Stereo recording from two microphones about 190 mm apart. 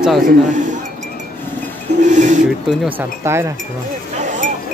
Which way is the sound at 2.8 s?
10° right (ahead or behind).